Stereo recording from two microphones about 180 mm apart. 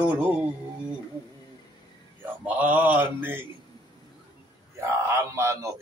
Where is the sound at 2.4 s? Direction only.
10° right (ahead or behind).